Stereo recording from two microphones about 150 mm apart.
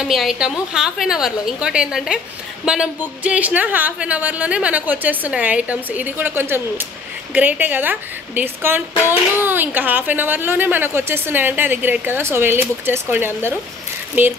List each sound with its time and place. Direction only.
0.0 s a woman's voice: centre (ahead or behind)